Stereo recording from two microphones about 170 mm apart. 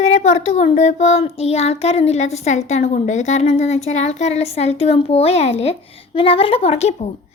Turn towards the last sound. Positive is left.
turn(degrees=40)  # may be behind; listen again after turning